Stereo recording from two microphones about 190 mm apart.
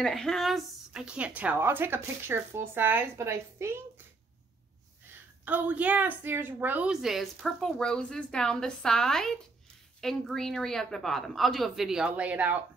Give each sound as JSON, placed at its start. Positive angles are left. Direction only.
{"t": 0.0, "sound": "a woman's voice", "side_deg": 0}
{"t": 5.4, "sound": "a woman's voice", "side_deg": -10}